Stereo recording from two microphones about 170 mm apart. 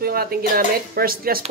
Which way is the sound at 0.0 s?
65° right (ahead or behind).